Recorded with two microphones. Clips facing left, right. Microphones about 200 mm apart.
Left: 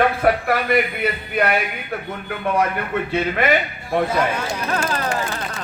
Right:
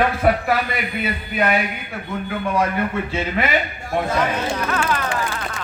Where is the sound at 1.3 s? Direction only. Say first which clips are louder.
Right 1 dB; 50° left (ahead or behind).